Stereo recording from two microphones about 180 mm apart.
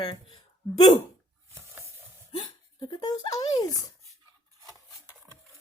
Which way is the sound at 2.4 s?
20° left (ahead or behind).